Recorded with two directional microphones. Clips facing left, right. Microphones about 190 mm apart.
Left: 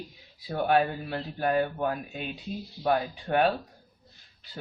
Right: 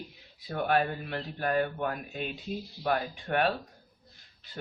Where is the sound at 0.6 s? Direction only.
30° left (ahead or behind).